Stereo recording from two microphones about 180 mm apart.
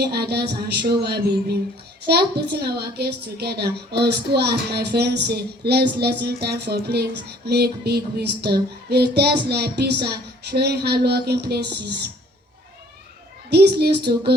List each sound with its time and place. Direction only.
0.0 s a child's voice: 60° right (ahead or behind)
13.5 s a child's voice: 65° right (ahead or behind)